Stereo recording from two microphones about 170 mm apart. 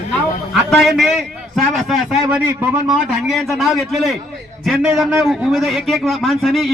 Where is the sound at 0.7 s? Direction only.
Centre (ahead or behind).